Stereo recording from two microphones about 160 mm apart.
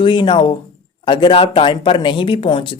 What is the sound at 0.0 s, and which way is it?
Speech, 30° left (ahead or behind).